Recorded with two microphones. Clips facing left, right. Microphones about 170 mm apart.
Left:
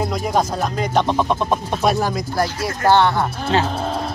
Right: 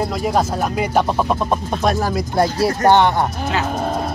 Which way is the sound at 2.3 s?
25° right (ahead or behind).